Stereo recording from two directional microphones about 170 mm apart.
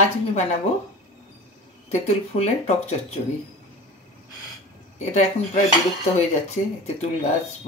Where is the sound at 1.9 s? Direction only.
40° left (ahead or behind).